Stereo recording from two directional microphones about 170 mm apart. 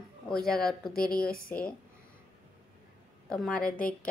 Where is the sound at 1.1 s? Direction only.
60° left (ahead or behind).